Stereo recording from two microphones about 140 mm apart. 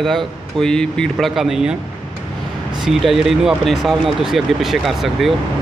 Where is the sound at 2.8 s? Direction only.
Centre (ahead or behind).